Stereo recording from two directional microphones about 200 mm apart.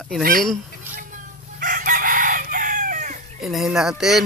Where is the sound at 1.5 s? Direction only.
45° right (ahead or behind).